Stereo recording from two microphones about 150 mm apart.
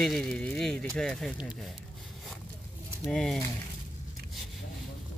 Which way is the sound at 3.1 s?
5° left (ahead or behind).